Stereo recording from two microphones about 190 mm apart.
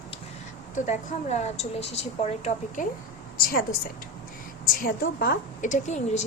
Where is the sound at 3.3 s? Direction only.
50° left (ahead or behind).